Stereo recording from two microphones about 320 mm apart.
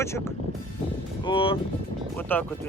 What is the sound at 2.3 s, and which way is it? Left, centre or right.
Speech, centre.